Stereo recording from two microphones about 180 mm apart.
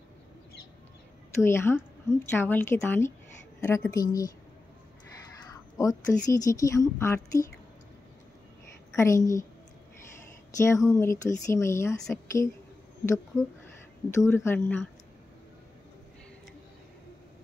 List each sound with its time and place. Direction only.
1.4 s speech: 15° left (ahead or behind)
5.8 s speech: 20° left (ahead or behind)
8.9 s speech: 15° left (ahead or behind)
10.5 s speech: 15° left (ahead or behind)
13.3 s speech: 5° right (ahead or behind)
14.2 s speech: 15° left (ahead or behind)